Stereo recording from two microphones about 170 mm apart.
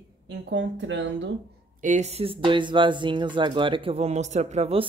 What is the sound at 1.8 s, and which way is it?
Speech, 45° right (ahead or behind).